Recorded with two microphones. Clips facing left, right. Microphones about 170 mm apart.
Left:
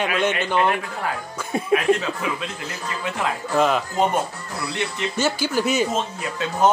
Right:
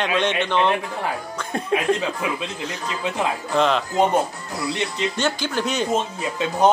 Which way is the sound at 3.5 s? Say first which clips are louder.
Even; 5° left (ahead or behind).